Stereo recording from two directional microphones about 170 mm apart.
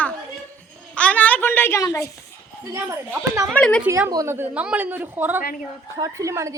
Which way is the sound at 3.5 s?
5° left (ahead or behind).